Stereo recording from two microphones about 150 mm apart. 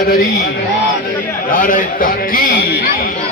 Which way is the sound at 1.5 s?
65° left (ahead or behind).